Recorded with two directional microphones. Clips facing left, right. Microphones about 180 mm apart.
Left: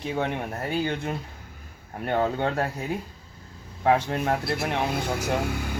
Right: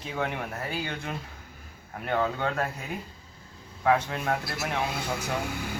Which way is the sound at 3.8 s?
30° left (ahead or behind).